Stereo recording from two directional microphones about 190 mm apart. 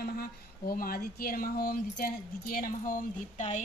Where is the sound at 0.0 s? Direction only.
50° left (ahead or behind).